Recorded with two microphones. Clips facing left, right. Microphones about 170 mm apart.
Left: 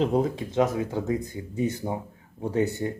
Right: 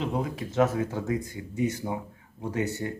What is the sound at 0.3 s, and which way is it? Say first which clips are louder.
Speech: left 1 dB; 20° left (ahead or behind).